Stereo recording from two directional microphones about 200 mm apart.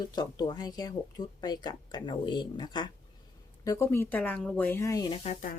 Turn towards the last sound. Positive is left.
turn(degrees=40)  # may be behind; listen again after turning